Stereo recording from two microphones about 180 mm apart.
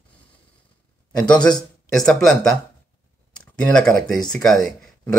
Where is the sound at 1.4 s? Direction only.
25° left (ahead or behind).